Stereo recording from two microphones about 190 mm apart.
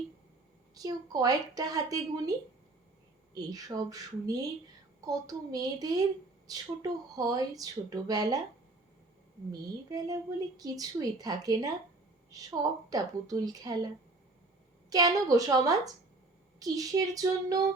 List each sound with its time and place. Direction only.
0.7 s a woman's voice: 20° right (ahead or behind)
3.3 s a woman's voice: 20° right (ahead or behind)
9.5 s a woman's voice: 20° right (ahead or behind)